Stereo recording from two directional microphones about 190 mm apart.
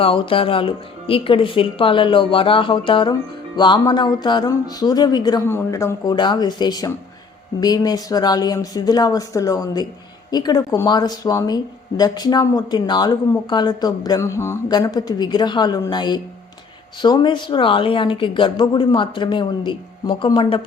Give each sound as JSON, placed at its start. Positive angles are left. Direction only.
{"t": 0.0, "sound": "speech", "side_deg": 30}